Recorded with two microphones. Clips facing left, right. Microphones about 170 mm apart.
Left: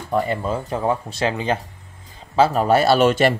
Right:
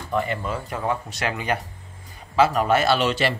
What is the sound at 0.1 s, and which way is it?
Speech, 35° left (ahead or behind).